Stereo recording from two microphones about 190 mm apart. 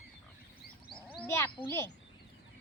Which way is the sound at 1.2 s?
10° left (ahead or behind).